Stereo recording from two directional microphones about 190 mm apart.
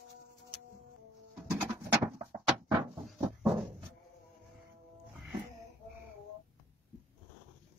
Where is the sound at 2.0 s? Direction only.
25° right (ahead or behind).